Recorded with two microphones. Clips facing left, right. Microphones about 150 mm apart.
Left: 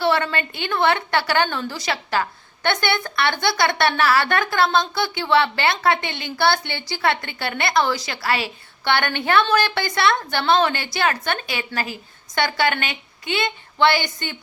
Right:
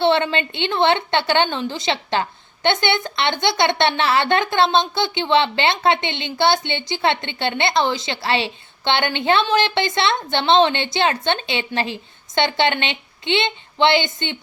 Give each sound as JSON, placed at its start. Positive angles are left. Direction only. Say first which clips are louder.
{"t": 0.0, "sound": "speech", "louder": "right 3 dB", "side_deg": -25}